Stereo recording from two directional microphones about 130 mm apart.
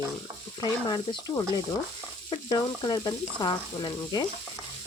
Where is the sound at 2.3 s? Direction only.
35° left (ahead or behind).